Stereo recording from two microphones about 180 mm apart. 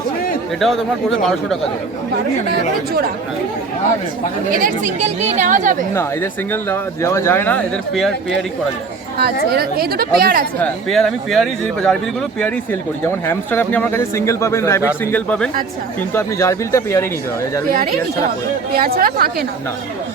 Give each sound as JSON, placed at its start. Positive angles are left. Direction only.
{"t": 1.2, "sound": "speech", "side_deg": 0}
{"t": 4.5, "sound": "a woman's voice", "side_deg": -45}
{"t": 6.5, "sound": "speech", "side_deg": 15}
{"t": 9.1, "sound": "speech", "side_deg": -60}
{"t": 10.6, "sound": "speech", "side_deg": 5}
{"t": 13.1, "sound": "speech", "side_deg": 10}
{"t": 18.7, "sound": "speech", "side_deg": -55}